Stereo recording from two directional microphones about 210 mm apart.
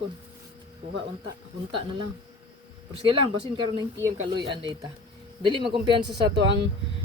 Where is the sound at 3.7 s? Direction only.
20° right (ahead or behind).